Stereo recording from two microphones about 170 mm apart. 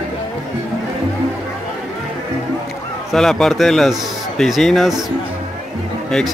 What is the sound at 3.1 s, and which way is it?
A man's voice, centre (ahead or behind).